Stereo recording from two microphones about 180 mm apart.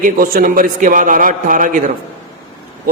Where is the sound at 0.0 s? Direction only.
50° right (ahead or behind).